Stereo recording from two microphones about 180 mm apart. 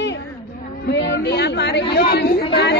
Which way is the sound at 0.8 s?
70° left (ahead or behind).